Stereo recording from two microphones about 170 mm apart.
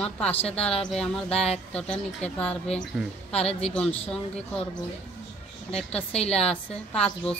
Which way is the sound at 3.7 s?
5° left (ahead or behind).